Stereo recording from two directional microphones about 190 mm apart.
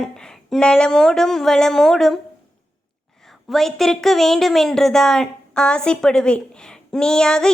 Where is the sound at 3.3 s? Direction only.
Centre (ahead or behind).